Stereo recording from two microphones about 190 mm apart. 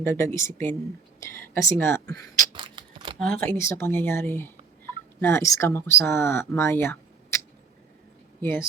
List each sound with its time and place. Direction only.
0.0 s speech: 15° left (ahead or behind)
2.5 s scissors: 25° right (ahead or behind)
3.4 s speech: 10° left (ahead or behind)